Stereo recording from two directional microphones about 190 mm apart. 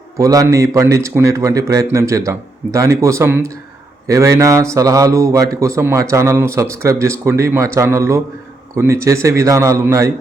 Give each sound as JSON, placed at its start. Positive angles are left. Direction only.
{"t": 0.2, "sound": "a man's voice", "side_deg": -20}